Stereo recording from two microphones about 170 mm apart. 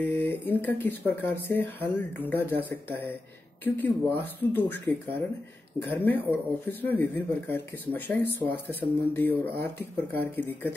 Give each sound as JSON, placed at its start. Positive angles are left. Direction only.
{"t": 0.0, "sound": "speech", "side_deg": 10}
{"t": 1.3, "sound": "speech", "side_deg": -70}
{"t": 1.8, "sound": "speech", "side_deg": 10}